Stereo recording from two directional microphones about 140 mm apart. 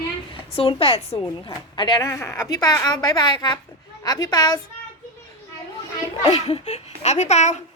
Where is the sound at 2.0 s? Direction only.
20° left (ahead or behind).